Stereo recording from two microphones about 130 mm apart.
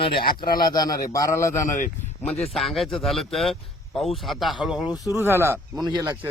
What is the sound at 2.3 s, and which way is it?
Speech, 5° left (ahead or behind).